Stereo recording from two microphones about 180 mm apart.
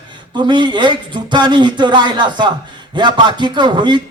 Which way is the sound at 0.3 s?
25° right (ahead or behind).